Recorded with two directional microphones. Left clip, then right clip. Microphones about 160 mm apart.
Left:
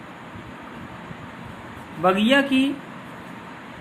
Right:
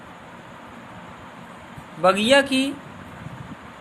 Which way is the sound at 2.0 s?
30° right (ahead or behind).